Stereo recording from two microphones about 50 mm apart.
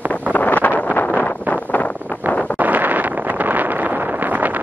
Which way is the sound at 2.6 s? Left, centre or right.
Right.